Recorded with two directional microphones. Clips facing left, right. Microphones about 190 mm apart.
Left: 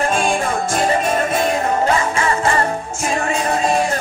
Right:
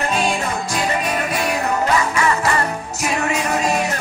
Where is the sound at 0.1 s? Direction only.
50° left (ahead or behind).